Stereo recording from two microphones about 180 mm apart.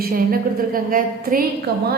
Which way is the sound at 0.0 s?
55° right (ahead or behind).